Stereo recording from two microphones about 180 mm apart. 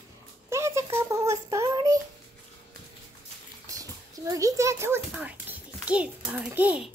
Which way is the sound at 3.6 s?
20° right (ahead or behind).